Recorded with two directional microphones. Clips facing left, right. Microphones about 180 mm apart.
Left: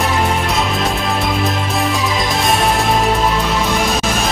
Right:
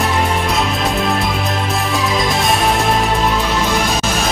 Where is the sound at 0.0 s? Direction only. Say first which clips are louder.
Even; centre (ahead or behind).